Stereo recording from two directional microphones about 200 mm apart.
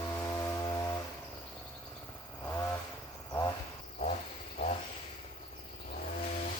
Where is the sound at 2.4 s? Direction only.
10° left (ahead or behind).